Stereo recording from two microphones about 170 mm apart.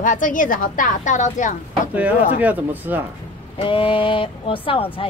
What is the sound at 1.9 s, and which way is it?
Speech, 10° right (ahead or behind).